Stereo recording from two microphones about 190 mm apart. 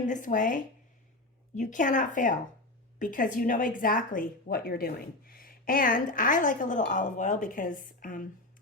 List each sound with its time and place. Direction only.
0.0 s a woman's voice: 40° left (ahead or behind)